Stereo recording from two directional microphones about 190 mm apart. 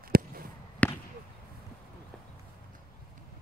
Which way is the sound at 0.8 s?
5° left (ahead or behind).